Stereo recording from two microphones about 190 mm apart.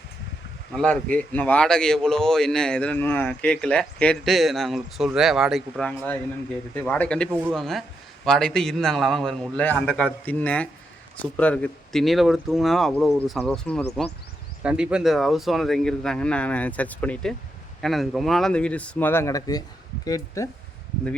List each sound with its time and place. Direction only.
0.7 s speech: 5° left (ahead or behind)
7.3 s speech: 10° right (ahead or behind)
7.5 s speech: centre (ahead or behind)
14.6 s speech: 5° right (ahead or behind); by 20.5 s 15° left (ahead or behind)